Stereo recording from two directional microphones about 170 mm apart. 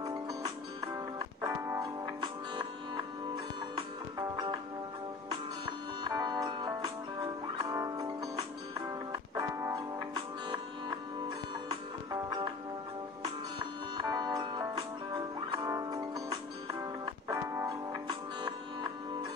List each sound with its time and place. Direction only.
0.0 s music: 20° right (ahead or behind)
3.7 s music: 25° right (ahead or behind)
6.0 s music: 25° right (ahead or behind)
12.1 s music: 20° right (ahead or behind)